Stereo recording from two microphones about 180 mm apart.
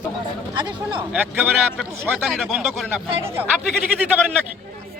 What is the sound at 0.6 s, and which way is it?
Speech, 25° right (ahead or behind).